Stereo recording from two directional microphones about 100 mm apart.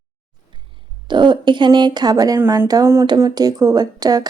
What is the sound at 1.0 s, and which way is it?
Speech, 50° right (ahead or behind).